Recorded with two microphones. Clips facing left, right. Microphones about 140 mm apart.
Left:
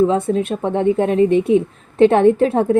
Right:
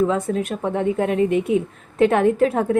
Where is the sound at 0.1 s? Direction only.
30° left (ahead or behind).